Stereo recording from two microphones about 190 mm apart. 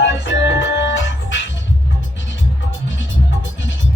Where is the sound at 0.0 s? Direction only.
70° left (ahead or behind).